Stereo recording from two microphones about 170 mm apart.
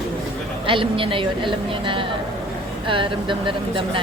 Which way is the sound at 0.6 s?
30° right (ahead or behind).